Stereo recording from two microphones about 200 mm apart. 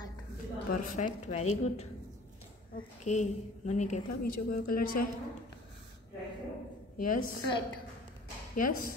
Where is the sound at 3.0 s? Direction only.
35° left (ahead or behind).